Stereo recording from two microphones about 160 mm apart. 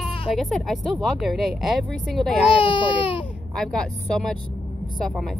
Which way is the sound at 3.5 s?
5° left (ahead or behind).